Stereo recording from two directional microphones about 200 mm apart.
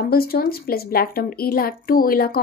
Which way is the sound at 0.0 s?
50° left (ahead or behind).